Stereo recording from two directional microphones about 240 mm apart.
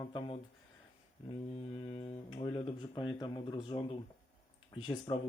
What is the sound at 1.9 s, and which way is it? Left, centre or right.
Speech, left.